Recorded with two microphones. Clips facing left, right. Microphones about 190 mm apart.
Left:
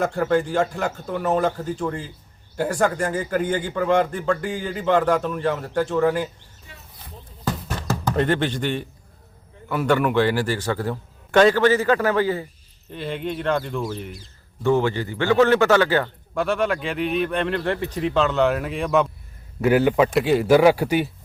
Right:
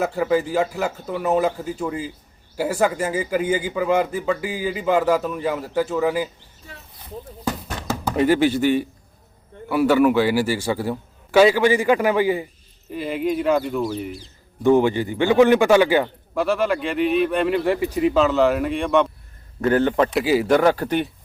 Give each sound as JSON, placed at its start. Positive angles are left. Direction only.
{"t": 0.0, "sound": "a man's voice", "side_deg": -5}
{"t": 8.0, "sound": "a man's voice", "side_deg": -5}
{"t": 14.6, "sound": "a man's voice", "side_deg": -15}
{"t": 16.3, "sound": "speech", "side_deg": 0}
{"t": 20.1, "sound": "speech", "side_deg": 0}